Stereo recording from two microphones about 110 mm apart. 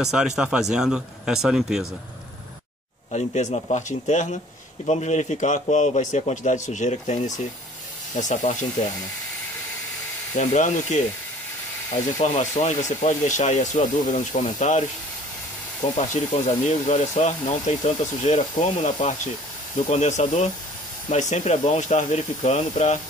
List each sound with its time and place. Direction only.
0.0 s speech: 5° right (ahead or behind)
3.1 s speech: 90° left
10.4 s speech: 90° left
12.2 s speech: 90° left
16.0 s speech: 90° left